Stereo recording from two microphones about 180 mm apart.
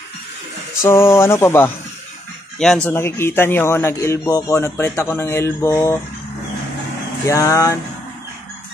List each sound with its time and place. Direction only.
0.8 s speech: 15° left (ahead or behind)
2.6 s speech: centre (ahead or behind)
2.9 s speech: 15° left (ahead or behind)
7.2 s speech: 15° left (ahead or behind)